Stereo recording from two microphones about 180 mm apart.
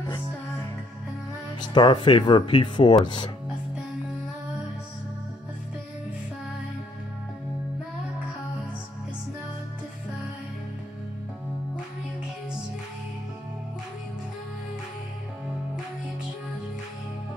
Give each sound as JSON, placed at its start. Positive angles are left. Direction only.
{"t": 1.6, "sound": "speech", "side_deg": 25}